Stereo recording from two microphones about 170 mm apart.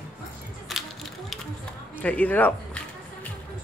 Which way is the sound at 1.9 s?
10° left (ahead or behind).